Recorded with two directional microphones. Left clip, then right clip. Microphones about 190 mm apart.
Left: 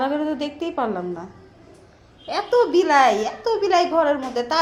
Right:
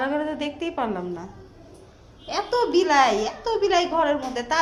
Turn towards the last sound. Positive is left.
turn(degrees=25)  # may be behind; listen again after turning